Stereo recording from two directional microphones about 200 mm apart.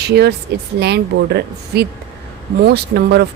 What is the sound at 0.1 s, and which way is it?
Speech, 55° right (ahead or behind).